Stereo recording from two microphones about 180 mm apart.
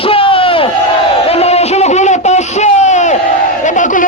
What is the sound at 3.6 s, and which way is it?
Battle cry, 45° left (ahead or behind).